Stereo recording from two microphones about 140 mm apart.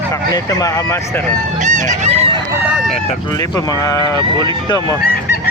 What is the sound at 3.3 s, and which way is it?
Speech, 25° left (ahead or behind).